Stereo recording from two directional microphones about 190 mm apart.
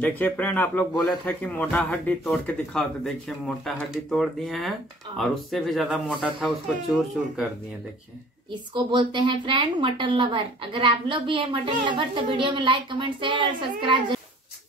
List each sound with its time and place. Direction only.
0.0 s speech: 10° left (ahead or behind)
8.7 s a woman's voice: 25° right (ahead or behind)